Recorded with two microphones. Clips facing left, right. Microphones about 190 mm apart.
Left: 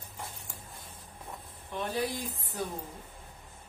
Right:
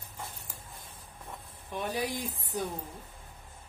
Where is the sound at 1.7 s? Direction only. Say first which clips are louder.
Even; 15° right (ahead or behind).